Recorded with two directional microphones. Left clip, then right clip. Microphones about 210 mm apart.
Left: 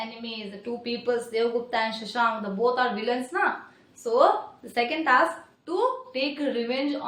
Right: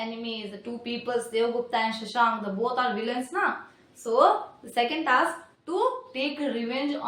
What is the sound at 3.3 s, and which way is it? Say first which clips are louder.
Speech: left 1 dB; 10° left (ahead or behind).